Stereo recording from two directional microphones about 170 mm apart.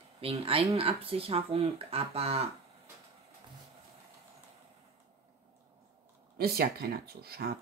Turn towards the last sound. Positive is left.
turn(degrees=-65)  # may be behind; listen again after turning